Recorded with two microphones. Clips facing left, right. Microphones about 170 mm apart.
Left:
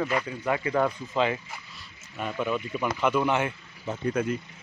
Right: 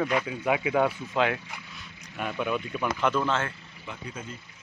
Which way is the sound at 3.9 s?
60° left (ahead or behind).